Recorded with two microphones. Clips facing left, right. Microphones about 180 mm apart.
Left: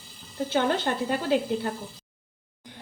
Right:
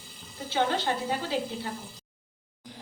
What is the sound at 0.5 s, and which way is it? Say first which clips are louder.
A woman's voice: left 2 dB; 55° left (ahead or behind).